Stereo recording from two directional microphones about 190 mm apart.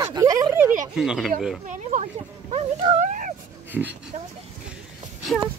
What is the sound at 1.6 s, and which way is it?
Speech, 40° right (ahead or behind).